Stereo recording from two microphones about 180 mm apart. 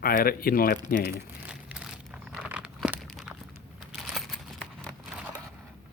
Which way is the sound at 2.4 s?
5° right (ahead or behind).